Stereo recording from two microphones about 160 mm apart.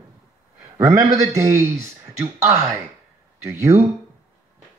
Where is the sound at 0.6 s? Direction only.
20° right (ahead or behind).